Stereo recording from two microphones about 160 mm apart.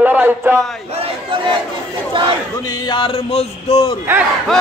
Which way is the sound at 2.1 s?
30° right (ahead or behind).